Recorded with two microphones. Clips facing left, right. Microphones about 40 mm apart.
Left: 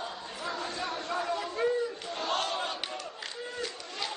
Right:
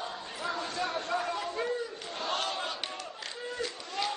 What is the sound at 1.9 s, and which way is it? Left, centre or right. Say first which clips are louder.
Battle cry: left 2 dB; centre.